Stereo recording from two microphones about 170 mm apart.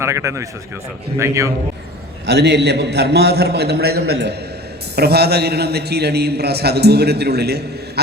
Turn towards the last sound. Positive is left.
turn(degrees=-70)  # may be behind; listen again after turning